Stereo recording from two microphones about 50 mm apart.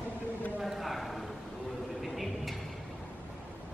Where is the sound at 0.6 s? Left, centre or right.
Centre.